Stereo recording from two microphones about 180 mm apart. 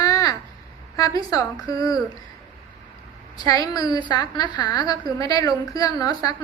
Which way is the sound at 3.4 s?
20° left (ahead or behind).